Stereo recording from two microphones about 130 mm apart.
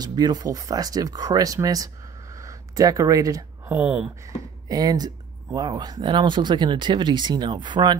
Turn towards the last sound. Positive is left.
turn(degrees=-35)  # may be behind; listen again after turning